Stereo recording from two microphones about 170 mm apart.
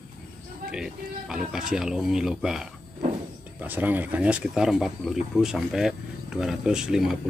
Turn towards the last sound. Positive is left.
turn(degrees=-5)  # may be behind; listen again after turning